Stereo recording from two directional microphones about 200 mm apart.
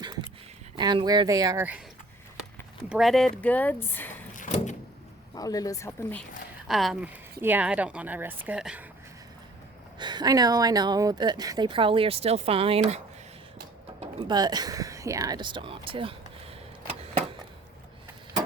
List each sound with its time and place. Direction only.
0.8 s speech: 20° right (ahead or behind)
2.9 s speech: centre (ahead or behind)
4.4 s door: 35° left (ahead or behind)
5.3 s speech: 20° left (ahead or behind)
6.7 s a woman's voice: centre (ahead or behind)
10.0 s speech: 20° right (ahead or behind)
14.0 s speech: 20° right (ahead or behind)